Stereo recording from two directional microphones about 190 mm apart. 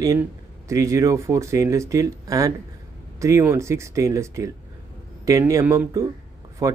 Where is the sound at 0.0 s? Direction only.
15° right (ahead or behind).